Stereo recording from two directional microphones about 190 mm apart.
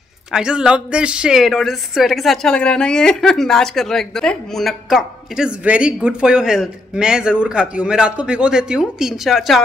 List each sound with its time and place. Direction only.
0.3 s speech: 5° right (ahead or behind)